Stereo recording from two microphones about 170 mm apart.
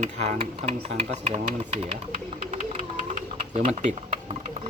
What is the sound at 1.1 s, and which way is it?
Speech, 35° right (ahead or behind).